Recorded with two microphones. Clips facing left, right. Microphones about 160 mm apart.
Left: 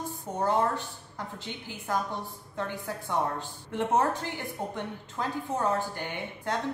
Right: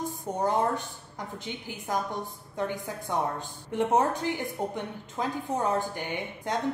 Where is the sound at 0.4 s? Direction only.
15° right (ahead or behind).